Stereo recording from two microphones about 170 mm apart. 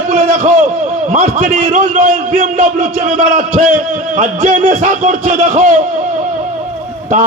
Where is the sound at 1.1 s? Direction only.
45° right (ahead or behind).